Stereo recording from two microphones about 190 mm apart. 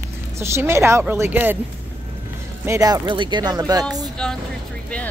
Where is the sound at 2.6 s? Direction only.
15° right (ahead or behind).